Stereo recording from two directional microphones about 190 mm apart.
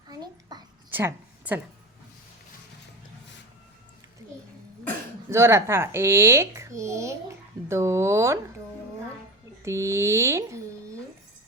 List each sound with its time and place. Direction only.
0.1 s a sound: 20° right (ahead or behind)
5.3 s speech: 15° right (ahead or behind)
9.6 s speech: 15° right (ahead or behind)